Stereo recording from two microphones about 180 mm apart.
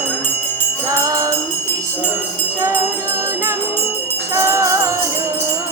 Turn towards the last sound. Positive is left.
turn(degrees=-15)  # may be behind; listen again after turning